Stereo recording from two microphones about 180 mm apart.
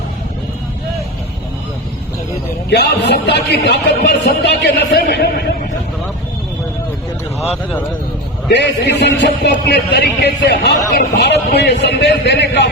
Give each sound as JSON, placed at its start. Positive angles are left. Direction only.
{"t": 2.6, "sound": "speech", "side_deg": 65}
{"t": 8.5, "sound": "speech", "side_deg": 70}